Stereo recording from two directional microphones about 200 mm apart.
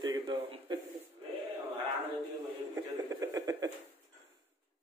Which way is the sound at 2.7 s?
15° right (ahead or behind).